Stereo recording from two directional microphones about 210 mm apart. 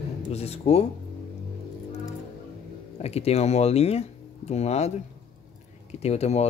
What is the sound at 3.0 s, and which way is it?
Speech, 30° left (ahead or behind).